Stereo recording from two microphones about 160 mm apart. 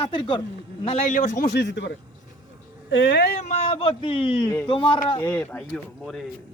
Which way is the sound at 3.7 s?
35° left (ahead or behind).